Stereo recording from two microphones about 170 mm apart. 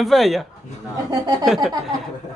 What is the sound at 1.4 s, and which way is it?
Speech, centre (ahead or behind).